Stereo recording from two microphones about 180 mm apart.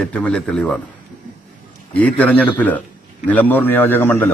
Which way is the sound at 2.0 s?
10° left (ahead or behind).